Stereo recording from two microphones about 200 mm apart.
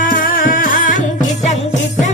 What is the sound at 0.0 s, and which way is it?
Music, 45° left (ahead or behind).